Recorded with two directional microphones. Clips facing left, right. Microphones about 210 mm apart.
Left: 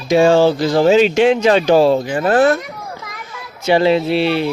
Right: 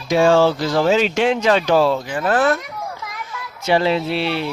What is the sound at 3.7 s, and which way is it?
Speech, 20° left (ahead or behind).